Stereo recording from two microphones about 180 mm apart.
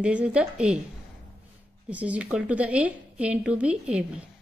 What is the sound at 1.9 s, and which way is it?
A woman's voice, 10° right (ahead or behind).